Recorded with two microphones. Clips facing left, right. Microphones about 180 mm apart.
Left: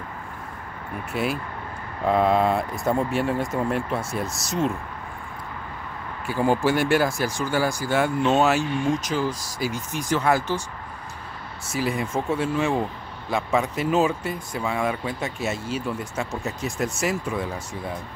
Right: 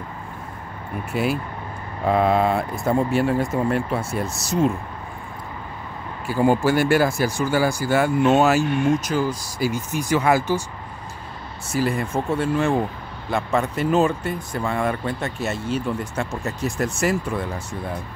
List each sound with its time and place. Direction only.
1.1 s speech: centre (ahead or behind)
4.3 s speech: 30° right (ahead or behind)
6.2 s speech: 5° right (ahead or behind)
11.7 s speech: centre (ahead or behind)